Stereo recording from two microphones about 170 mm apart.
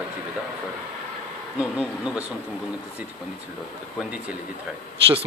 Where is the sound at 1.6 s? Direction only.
5° right (ahead or behind).